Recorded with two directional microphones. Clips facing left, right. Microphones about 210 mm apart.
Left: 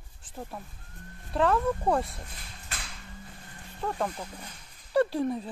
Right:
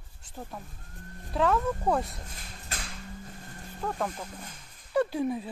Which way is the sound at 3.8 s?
Centre (ahead or behind).